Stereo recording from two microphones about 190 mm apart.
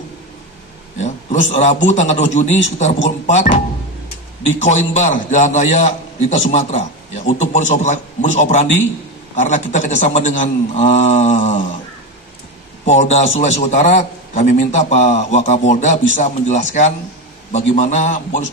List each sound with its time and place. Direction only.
0.9 s a man's voice: 40° left (ahead or behind)
12.8 s a man's voice: 35° left (ahead or behind)